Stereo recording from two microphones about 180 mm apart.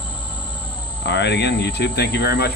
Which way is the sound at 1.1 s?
70° left (ahead or behind).